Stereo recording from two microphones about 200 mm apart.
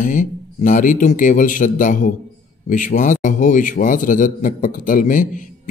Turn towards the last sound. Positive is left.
turn(degrees=40)  # may be behind; listen again after turning